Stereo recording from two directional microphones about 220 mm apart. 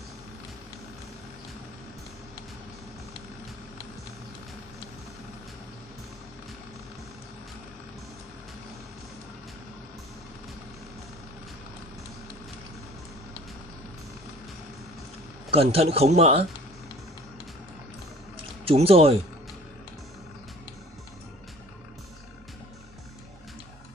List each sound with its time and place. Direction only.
15.5 s speech: 25° right (ahead or behind)
18.7 s speech: 25° right (ahead or behind)